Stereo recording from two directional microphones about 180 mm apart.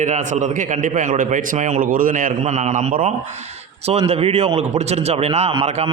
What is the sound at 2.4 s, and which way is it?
A man's voice, 40° right (ahead or behind).